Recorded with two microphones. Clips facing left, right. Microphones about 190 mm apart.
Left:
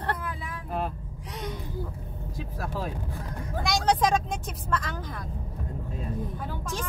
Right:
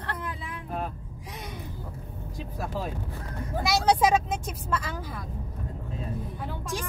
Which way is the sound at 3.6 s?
5° right (ahead or behind).